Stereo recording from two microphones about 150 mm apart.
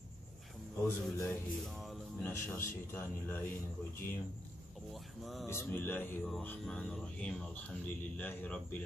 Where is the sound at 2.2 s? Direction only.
15° left (ahead or behind).